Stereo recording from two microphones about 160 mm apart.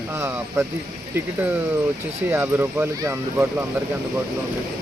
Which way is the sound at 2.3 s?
15° right (ahead or behind).